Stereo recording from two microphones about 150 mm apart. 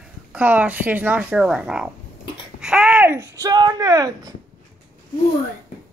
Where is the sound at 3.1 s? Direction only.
20° right (ahead or behind).